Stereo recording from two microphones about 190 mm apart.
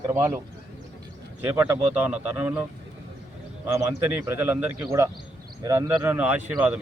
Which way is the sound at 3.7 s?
10° right (ahead or behind).